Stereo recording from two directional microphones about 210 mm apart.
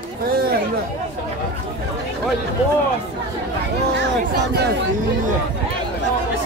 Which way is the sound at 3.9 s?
55° right (ahead or behind).